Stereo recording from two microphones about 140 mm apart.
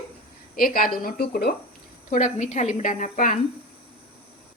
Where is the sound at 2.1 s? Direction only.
60° left (ahead or behind).